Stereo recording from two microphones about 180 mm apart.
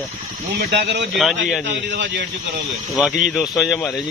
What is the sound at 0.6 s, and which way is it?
Speech, 65° right (ahead or behind).